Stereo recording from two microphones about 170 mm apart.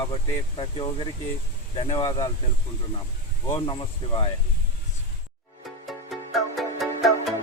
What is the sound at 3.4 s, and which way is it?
Speech, 25° left (ahead or behind).